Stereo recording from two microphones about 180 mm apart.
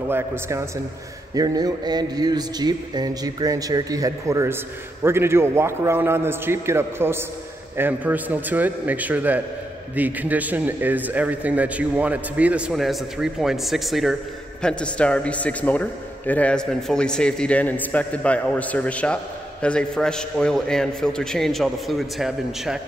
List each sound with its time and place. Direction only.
0.1 s a man's voice: 15° right (ahead or behind)